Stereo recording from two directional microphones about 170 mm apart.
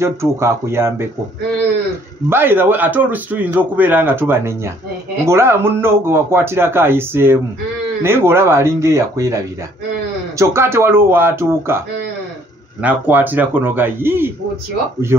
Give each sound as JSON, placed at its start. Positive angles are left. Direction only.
{"t": 0.0, "sound": "a man's voice", "side_deg": -15}
{"t": 2.2, "sound": "a man's voice", "side_deg": -15}
{"t": 10.4, "sound": "a man's voice", "side_deg": -15}
{"t": 12.8, "sound": "a man's voice", "side_deg": -10}